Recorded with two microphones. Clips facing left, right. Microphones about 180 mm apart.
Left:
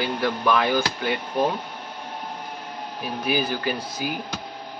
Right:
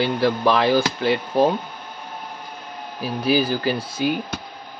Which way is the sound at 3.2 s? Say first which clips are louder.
Right 5 dB; 30° right (ahead or behind).